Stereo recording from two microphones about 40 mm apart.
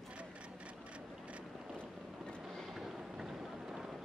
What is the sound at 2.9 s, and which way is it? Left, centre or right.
Vehicle, centre.